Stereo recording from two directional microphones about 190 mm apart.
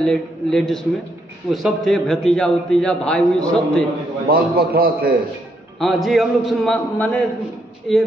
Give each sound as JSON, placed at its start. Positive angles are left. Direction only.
{"t": 0.0, "sound": "a man's voice", "side_deg": 5}
{"t": 4.3, "sound": "a man's voice", "side_deg": -50}
{"t": 5.8, "sound": "a man's voice", "side_deg": 0}